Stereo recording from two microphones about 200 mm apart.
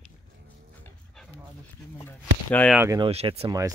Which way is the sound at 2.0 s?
10° left (ahead or behind).